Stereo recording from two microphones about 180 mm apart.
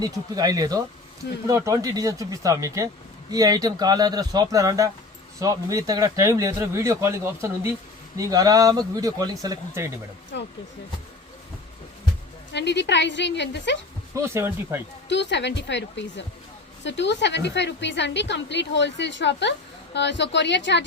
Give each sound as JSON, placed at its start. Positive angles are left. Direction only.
{"t": 0.0, "sound": "speech", "side_deg": -20}
{"t": 10.3, "sound": "a woman's voice", "side_deg": 70}
{"t": 12.5, "sound": "a woman's voice", "side_deg": 75}
{"t": 14.2, "sound": "speech", "side_deg": -15}
{"t": 15.1, "sound": "a woman's voice", "side_deg": 75}